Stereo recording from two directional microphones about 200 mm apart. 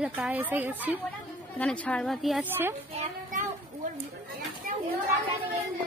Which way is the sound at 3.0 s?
40° right (ahead or behind).